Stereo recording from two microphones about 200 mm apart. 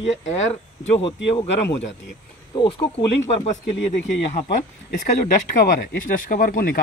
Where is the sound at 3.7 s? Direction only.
60° left (ahead or behind).